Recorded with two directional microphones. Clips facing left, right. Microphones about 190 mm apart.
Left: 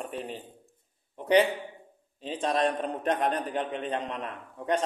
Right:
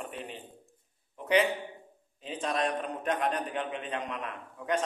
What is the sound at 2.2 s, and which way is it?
A man's voice, 30° left (ahead or behind).